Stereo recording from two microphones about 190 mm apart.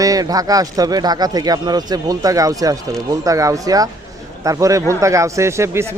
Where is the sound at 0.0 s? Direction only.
20° right (ahead or behind).